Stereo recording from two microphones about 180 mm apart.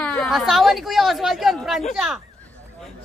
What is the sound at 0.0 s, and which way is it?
A woman's voice, 5° left (ahead or behind).